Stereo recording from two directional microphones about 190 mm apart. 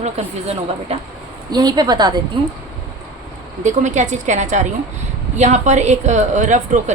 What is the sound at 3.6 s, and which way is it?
A woman's voice, 40° right (ahead or behind).